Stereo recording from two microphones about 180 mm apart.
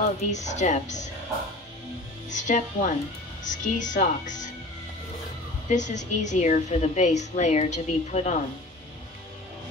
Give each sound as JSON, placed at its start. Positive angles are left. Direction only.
{"t": 0.2, "sound": "a woman's voice", "side_deg": 40}
{"t": 2.2, "sound": "speech", "side_deg": 45}
{"t": 5.7, "sound": "a woman's voice", "side_deg": 45}